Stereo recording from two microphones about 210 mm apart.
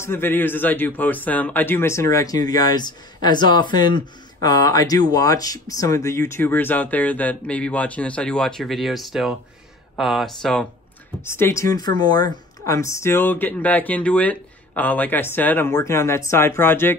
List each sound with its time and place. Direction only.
0.0 s speech: 10° left (ahead or behind)